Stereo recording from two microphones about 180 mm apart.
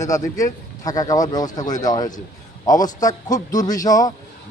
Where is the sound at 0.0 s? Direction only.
20° left (ahead or behind).